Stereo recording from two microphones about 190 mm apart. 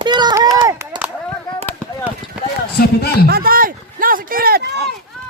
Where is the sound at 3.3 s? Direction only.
50° right (ahead or behind).